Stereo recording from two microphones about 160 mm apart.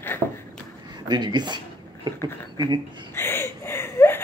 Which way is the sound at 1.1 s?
30° right (ahead or behind).